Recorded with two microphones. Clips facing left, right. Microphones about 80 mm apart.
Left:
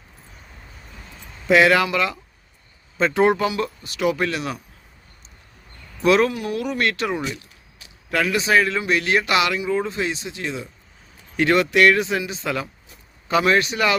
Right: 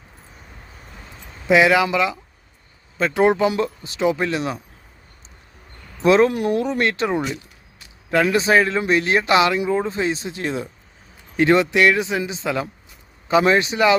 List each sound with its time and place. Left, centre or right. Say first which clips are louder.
1.5 s speech: right 1 dB; centre; by 4.6 s right
6.0 s speech: right 2 dB; right
6.3 s speech: right 6 dB; right
6.6 s speech: right 3 dB; right
8.1 s speech: right 3 dB; right
11.3 s speech: right 1 dB; right